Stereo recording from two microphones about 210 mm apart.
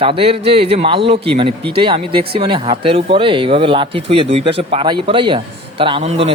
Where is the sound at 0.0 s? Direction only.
25° right (ahead or behind).